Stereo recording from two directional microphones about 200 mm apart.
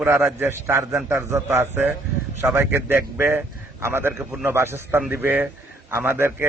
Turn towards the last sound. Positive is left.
turn(degrees=-10)  # may be behind; listen again after turning